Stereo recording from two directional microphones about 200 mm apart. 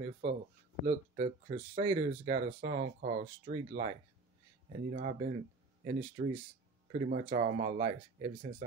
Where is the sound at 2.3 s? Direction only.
40° right (ahead or behind).